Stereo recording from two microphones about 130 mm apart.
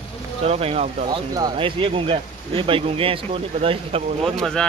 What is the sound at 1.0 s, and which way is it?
Speech, 30° right (ahead or behind).